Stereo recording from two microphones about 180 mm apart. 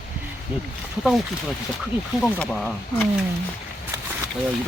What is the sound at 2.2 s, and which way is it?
Speech, 5° left (ahead or behind).